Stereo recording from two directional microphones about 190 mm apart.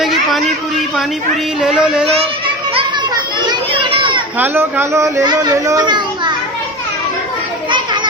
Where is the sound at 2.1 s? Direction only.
30° right (ahead or behind).